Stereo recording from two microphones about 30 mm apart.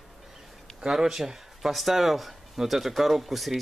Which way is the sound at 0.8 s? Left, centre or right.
Centre.